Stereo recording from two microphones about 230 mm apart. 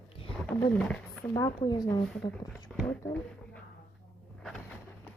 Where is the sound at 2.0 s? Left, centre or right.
Centre.